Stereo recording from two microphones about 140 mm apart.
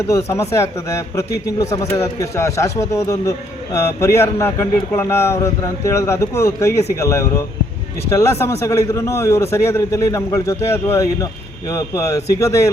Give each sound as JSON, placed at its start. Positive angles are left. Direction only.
{"t": 0.1, "sound": "a man's voice", "side_deg": 20}